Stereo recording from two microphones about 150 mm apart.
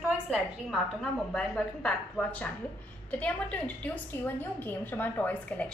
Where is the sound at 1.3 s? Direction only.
5° left (ahead or behind).